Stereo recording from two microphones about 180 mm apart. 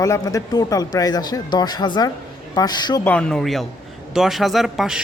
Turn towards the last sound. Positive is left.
turn(degrees=0)  # may be behind; listen again after turning